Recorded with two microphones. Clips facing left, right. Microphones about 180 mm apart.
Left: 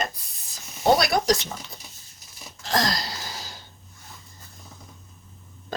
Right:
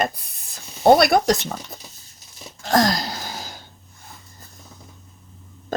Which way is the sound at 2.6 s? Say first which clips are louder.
Right 7 dB; 50° right (ahead or behind).